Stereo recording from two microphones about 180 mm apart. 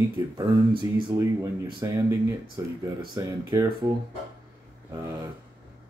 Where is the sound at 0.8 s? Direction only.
20° right (ahead or behind).